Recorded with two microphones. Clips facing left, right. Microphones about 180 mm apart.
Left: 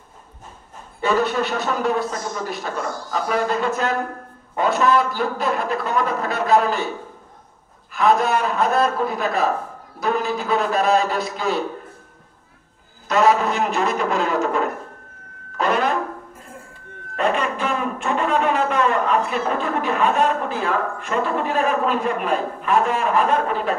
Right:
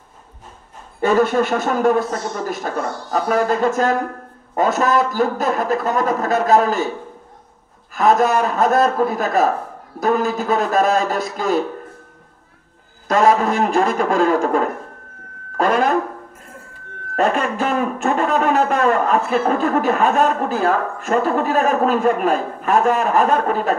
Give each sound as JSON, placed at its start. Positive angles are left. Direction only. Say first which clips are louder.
{"t": 1.0, "sound": "speech", "louder": "right 4 dB", "side_deg": -45}
{"t": 7.9, "sound": "speech", "louder": "right 3 dB", "side_deg": -45}
{"t": 13.1, "sound": "speech", "louder": "right 2 dB", "side_deg": -45}
{"t": 17.1, "sound": "speech", "louder": "right 3 dB", "side_deg": -45}